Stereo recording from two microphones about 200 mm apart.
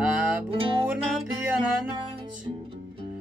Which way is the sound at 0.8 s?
5° right (ahead or behind).